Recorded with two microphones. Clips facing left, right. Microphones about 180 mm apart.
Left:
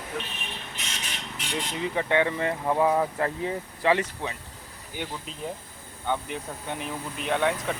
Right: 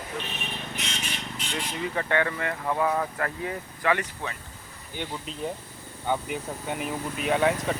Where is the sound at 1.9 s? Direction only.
20° left (ahead or behind).